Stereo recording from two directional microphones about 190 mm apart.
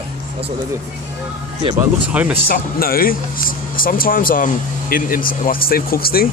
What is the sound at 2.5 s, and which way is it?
Speech, 50° left (ahead or behind).